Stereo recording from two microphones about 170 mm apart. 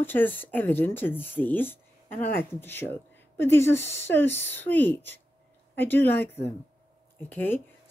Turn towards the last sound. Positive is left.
turn(degrees=10)  # may be behind; listen again after turning